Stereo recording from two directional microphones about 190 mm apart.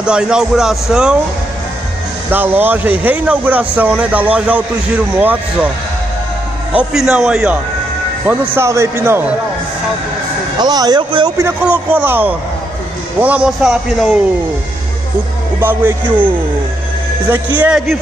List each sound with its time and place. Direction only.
0.0 s speech: 5° right (ahead or behind)
2.3 s a man's voice: 10° right (ahead or behind)
6.8 s a man's voice: 5° right (ahead or behind)
10.6 s a man's voice: 20° right (ahead or behind)
11.3 s a man's voice: 10° right (ahead or behind)
15.6 s a man's voice: 10° right (ahead or behind)
17.6 s speech: 5° right (ahead or behind)